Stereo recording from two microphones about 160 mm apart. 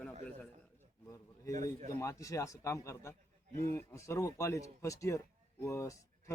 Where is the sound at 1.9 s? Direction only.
20° left (ahead or behind).